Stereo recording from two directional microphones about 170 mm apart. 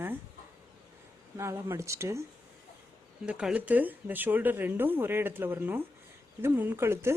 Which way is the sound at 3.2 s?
5° right (ahead or behind).